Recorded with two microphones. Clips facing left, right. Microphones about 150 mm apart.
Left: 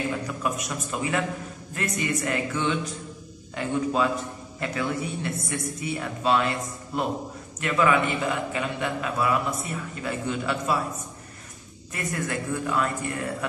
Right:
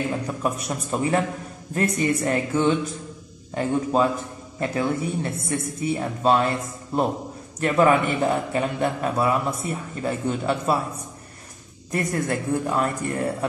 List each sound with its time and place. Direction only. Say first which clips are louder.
0.3 s a man's voice: right 3 dB; 35° right (ahead or behind)
7.6 s a man's voice: right 4 dB; 40° right (ahead or behind)
11.9 s a man's voice: right 5 dB; 35° right (ahead or behind)